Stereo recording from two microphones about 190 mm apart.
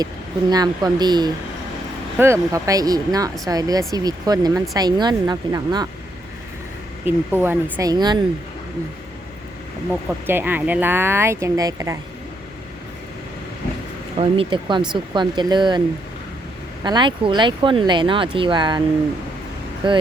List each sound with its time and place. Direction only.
0.5 s speech: 20° right (ahead or behind)
7.0 s speech: 10° right (ahead or behind)
9.9 s speech: 10° right (ahead or behind)
14.2 s speech: 30° right (ahead or behind)
16.8 s speech: 25° right (ahead or behind)
19.8 s speech: 25° right (ahead or behind)